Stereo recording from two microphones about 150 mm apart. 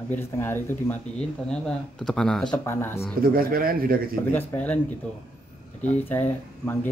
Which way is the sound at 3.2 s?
80° right.